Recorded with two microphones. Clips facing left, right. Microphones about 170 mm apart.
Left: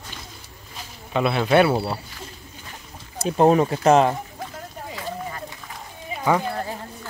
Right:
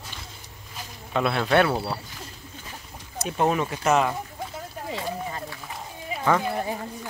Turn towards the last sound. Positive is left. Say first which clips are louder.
# right 1 dB
turn(degrees=-15)  # may be behind; listen again after turning